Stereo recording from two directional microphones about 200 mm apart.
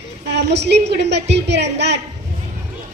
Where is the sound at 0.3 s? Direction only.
60° right (ahead or behind).